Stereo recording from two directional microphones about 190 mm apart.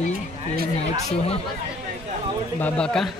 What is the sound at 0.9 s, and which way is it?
Speech, 30° left (ahead or behind).